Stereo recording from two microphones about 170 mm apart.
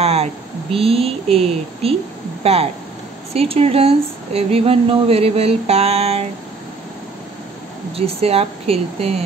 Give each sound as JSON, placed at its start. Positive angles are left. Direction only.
{"t": 0.0, "sound": "speech", "side_deg": -40}
{"t": 7.9, "sound": "speech", "side_deg": -35}